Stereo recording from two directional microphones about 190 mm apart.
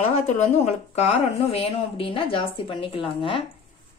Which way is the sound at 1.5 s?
30° left (ahead or behind).